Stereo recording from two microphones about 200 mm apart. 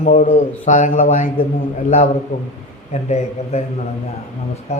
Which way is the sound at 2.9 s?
35° left (ahead or behind).